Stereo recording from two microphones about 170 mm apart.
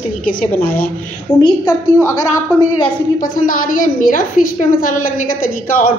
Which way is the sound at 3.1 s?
50° left (ahead or behind).